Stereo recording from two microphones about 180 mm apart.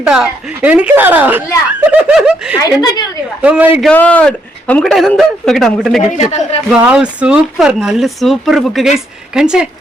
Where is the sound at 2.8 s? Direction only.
25° left (ahead or behind).